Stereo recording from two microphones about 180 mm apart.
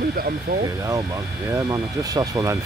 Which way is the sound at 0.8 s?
20° right (ahead or behind).